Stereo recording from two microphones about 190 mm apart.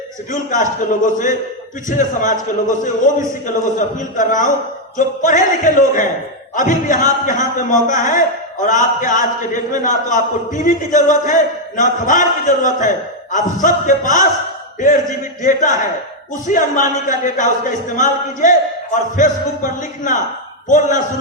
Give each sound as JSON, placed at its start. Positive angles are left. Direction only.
{"t": 0.3, "sound": "a man's voice", "side_deg": 40}
{"t": 15.4, "sound": "a man's voice", "side_deg": 40}